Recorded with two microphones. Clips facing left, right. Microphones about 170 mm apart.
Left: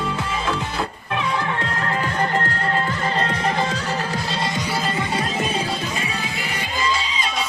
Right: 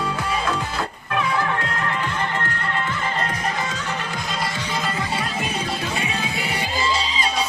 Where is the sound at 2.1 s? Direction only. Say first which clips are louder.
Left 4 dB; 40° left (ahead or behind).